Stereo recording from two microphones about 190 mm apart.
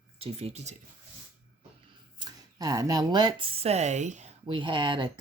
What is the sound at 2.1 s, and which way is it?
Speech, 20° right (ahead or behind).